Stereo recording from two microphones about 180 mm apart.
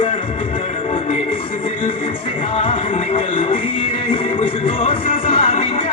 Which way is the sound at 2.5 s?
30° left (ahead or behind).